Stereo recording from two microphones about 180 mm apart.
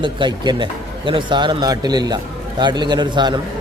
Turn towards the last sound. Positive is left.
turn(degrees=-25)  # may be behind; listen again after turning